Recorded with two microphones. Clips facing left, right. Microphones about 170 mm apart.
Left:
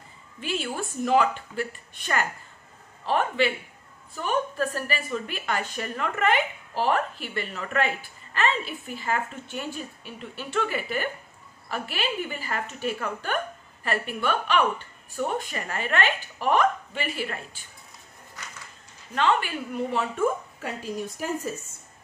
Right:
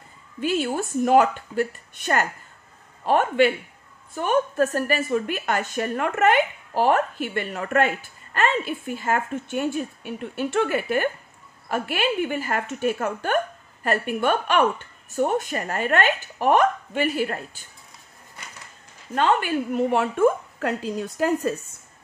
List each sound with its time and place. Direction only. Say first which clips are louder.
0.4 s a woman's voice: right 7 dB; 45° right (ahead or behind)
19.1 s a woman's voice: right 3 dB; 45° right (ahead or behind); by 21.5 s 85° right